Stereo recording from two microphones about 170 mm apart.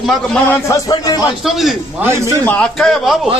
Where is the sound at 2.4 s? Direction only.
5° left (ahead or behind).